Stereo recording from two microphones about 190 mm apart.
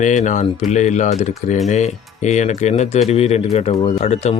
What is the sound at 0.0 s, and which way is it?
Speech, 40° left (ahead or behind).